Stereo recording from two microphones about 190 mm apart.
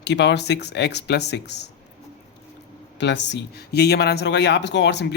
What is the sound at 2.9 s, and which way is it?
A man's voice, 70° left (ahead or behind).